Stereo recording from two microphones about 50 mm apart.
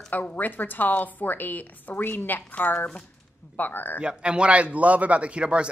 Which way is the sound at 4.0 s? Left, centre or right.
Right.